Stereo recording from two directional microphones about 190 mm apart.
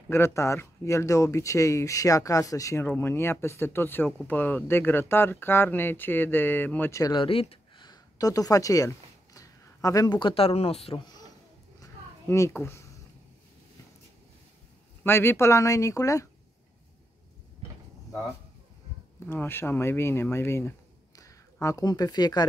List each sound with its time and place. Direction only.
0.1 s speech: 15° left (ahead or behind); by 11.0 s 30° left (ahead or behind)
11.8 s a sound: 15° left (ahead or behind)
15.0 s speech: 10° left (ahead or behind)
19.1 s speech: 10° left (ahead or behind)